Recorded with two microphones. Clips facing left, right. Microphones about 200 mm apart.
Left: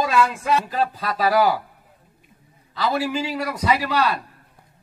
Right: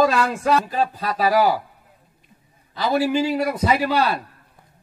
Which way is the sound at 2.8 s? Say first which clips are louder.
Right 4 dB; 40° right (ahead or behind).